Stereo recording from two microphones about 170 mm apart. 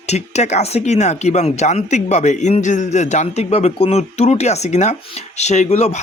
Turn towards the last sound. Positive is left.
turn(degrees=40)  # may be behind; listen again after turning